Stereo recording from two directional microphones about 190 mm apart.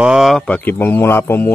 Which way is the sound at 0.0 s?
Centre (ahead or behind).